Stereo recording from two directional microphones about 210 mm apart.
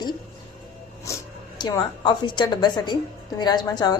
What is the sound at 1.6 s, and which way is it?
A woman's voice, 20° left (ahead or behind).